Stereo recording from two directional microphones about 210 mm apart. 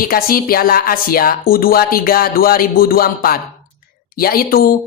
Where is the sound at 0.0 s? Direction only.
45° left (ahead or behind).